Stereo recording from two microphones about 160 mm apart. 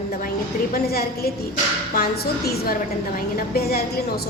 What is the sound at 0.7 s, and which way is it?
A woman's voice, 75° left (ahead or behind).